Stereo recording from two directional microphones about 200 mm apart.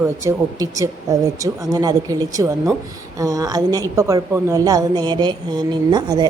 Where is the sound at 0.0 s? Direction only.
15° right (ahead or behind).